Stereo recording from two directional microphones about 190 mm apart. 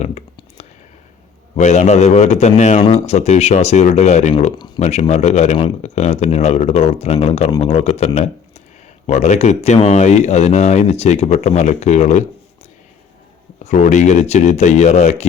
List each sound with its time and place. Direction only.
0.0 s clicking: 35° left (ahead or behind)
1.5 s speech: 35° left (ahead or behind)
13.7 s speech: 40° left (ahead or behind)